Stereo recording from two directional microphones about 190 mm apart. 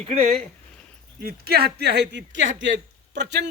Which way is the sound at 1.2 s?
55° right (ahead or behind).